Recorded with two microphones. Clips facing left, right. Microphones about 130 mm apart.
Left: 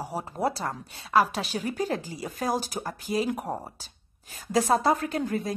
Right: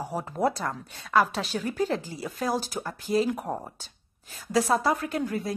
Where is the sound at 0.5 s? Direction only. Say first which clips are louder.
Right 1 dB; 30° left (ahead or behind).